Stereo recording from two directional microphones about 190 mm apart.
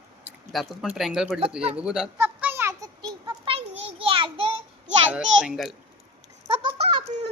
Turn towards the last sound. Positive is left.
turn(degrees=-30)  # may be behind; listen again after turning